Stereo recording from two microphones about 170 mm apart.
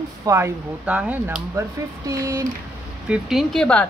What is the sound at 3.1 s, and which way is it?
Speech, centre (ahead or behind).